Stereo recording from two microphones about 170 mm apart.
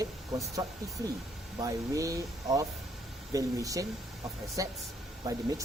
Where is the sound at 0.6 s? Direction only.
20° right (ahead or behind).